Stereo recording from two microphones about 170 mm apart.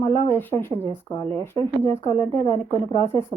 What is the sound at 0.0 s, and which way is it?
A woman's voice, 20° left (ahead or behind).